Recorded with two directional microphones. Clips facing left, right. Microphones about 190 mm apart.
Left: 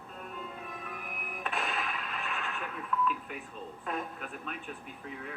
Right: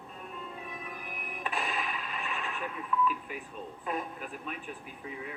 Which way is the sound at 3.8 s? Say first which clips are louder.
Right 1 dB; 5° right (ahead or behind).